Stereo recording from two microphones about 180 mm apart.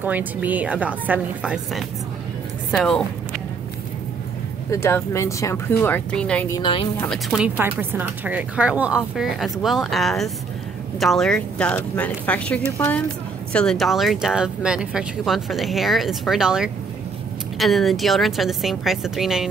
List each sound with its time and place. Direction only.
0.0 s a woman's voice: 10° right (ahead or behind)
4.6 s speech: 15° left (ahead or behind)
6.6 s speech: 30° left (ahead or behind)
7.0 s speech: centre (ahead or behind)